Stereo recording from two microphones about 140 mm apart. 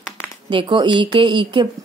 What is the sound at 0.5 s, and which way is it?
A woman's voice, 35° right (ahead or behind).